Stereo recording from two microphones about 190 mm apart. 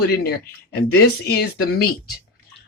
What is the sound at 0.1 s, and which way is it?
Speech, 55° left (ahead or behind).